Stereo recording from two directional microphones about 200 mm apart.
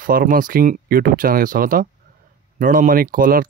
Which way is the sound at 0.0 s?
45° right (ahead or behind).